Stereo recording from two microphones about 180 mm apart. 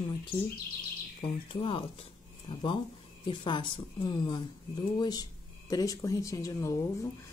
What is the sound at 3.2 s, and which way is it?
A woman's voice, 25° left (ahead or behind).